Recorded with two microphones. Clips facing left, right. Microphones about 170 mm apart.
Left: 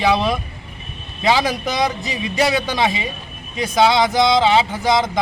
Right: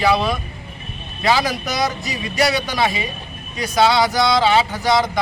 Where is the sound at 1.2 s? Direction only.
20° left (ahead or behind).